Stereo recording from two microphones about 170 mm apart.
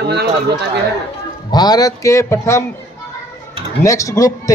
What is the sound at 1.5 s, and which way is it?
A man's voice, 25° left (ahead or behind).